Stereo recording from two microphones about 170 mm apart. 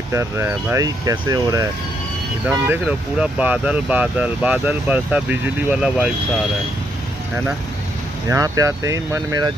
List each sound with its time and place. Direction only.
0.1 s speech: 15° right (ahead or behind)
2.4 s speech: 10° right (ahead or behind)
8.3 s speech: 20° right (ahead or behind)